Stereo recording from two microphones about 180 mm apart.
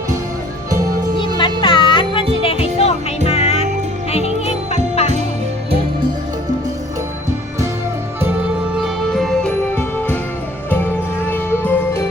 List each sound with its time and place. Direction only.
1.4 s music: 25° left (ahead or behind)
4.7 s music: 35° left (ahead or behind)
8.8 s music: centre (ahead or behind)